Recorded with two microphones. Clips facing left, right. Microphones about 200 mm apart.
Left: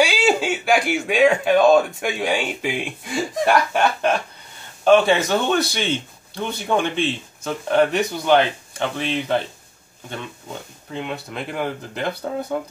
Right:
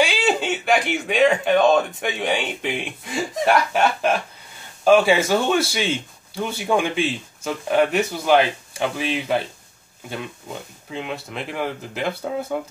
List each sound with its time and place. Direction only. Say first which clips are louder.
0.0 s speech: left 2 dB; centre (ahead or behind)
10.9 s speech: left 1 dB; centre (ahead or behind)